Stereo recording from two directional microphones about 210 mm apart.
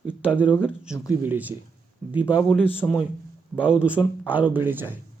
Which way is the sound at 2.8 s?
10° left (ahead or behind).